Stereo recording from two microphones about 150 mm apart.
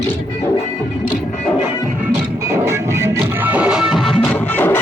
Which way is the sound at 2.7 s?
15° right (ahead or behind).